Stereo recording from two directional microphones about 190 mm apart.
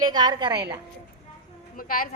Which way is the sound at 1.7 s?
45° left (ahead or behind).